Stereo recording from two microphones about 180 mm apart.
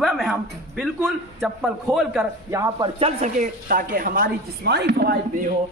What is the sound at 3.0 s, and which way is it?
A woman's voice, 45° right (ahead or behind).